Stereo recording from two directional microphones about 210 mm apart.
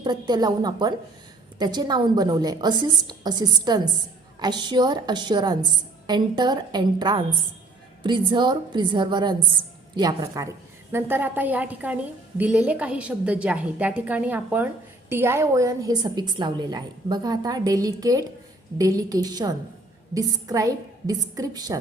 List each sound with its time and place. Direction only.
0.0 s a woman's voice: 20° right (ahead or behind)